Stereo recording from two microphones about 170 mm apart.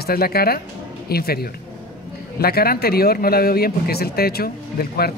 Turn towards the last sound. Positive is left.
turn(degrees=65)  # may be behind; listen again after turning